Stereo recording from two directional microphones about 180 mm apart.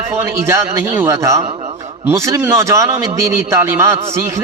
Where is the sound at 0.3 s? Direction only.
15° right (ahead or behind).